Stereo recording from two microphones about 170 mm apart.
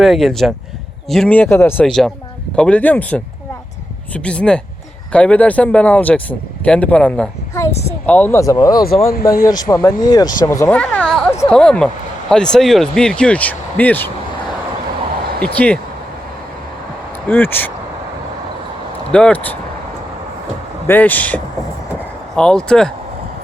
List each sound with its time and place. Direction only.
0.0 s speech: centre (ahead or behind); by 8.8 s 20° left (ahead or behind)
9.3 s a man's voice: 55° left (ahead or behind)
9.6 s speech: 20° left (ahead or behind)
10.7 s a sound: 5° left (ahead or behind)
11.4 s speech: 5° left (ahead or behind)
15.4 s speech: 10° left (ahead or behind)
17.2 s speech: 10° left (ahead or behind)
19.1 s speech: 5° left (ahead or behind)
20.8 s speech: 10° left (ahead or behind)